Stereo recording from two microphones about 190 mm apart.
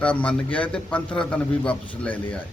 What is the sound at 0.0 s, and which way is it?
Speech, 5° left (ahead or behind).